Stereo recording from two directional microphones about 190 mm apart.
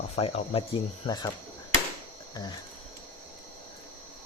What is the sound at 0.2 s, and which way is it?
Speech, 30° left (ahead or behind).